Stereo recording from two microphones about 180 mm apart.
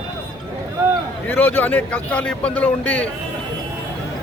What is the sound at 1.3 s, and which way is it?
Speech, 10° left (ahead or behind).